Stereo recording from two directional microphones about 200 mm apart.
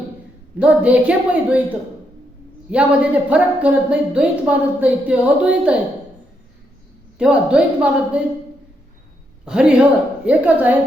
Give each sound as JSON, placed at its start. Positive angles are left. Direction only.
{"t": 0.6, "sound": "a woman's voice", "side_deg": -5}
{"t": 2.6, "sound": "speech", "side_deg": -5}
{"t": 7.2, "sound": "speech", "side_deg": -5}
{"t": 9.5, "sound": "a woman's voice", "side_deg": -5}